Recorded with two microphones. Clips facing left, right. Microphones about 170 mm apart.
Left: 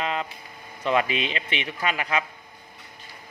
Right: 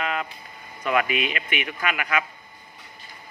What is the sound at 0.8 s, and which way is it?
Speech, 30° left (ahead or behind).